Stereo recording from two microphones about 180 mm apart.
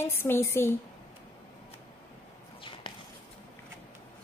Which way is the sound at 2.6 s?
30° left (ahead or behind).